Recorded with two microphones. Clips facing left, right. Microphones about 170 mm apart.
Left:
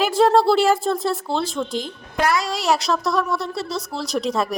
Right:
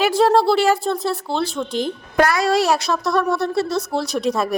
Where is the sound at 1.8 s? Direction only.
60° right (ahead or behind).